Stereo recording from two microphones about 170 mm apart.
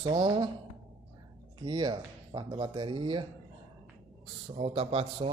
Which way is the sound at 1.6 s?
25° right (ahead or behind).